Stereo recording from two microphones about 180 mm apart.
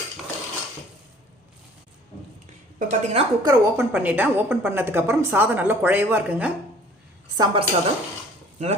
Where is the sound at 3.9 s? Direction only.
10° right (ahead or behind).